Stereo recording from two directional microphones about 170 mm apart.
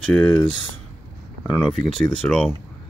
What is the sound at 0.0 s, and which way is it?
Speech, 5° left (ahead or behind).